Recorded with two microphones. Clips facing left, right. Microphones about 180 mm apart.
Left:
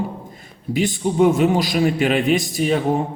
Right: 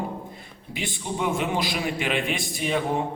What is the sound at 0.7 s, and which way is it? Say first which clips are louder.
A man's voice: left 12 dB; 45° left (ahead or behind).